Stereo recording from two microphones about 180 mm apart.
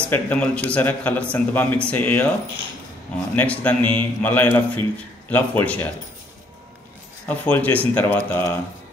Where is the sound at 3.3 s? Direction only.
10° left (ahead or behind).